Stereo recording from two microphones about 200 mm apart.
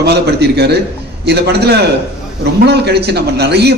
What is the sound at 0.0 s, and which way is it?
A man's voice, 55° right (ahead or behind).